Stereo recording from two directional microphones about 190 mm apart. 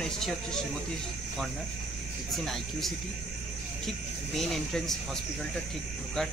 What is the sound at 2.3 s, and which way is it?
Speech, centre (ahead or behind).